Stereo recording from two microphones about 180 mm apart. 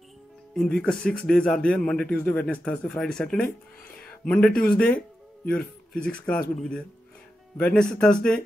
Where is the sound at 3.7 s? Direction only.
55° left (ahead or behind).